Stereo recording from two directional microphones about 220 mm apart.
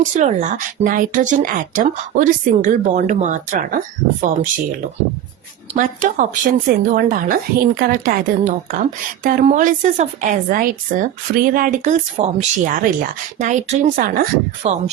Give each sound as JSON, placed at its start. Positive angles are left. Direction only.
{"t": 0.0, "sound": "speech", "side_deg": -35}
{"t": 5.7, "sound": "speech", "side_deg": -35}